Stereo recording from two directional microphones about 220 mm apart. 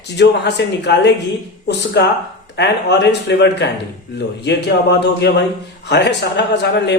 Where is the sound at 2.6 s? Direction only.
50° left (ahead or behind).